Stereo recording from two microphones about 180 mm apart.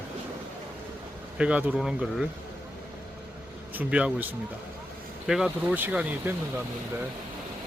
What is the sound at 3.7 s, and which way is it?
Speech, 10° right (ahead or behind).